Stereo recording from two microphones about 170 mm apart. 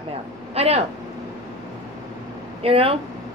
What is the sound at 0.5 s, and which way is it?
Speech, 40° right (ahead or behind).